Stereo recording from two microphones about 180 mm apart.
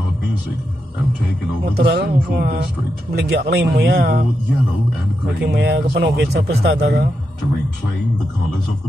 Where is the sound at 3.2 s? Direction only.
70° right (ahead or behind).